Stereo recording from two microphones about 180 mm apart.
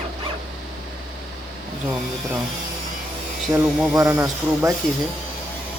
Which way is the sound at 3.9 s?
20° right (ahead or behind).